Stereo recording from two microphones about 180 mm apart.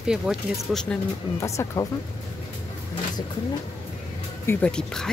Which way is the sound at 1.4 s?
15° left (ahead or behind).